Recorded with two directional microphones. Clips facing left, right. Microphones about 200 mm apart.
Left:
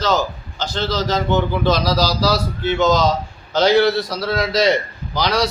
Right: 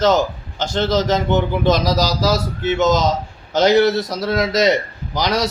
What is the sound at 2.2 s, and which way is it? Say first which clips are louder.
A man's voice: even; 45° right (ahead or behind).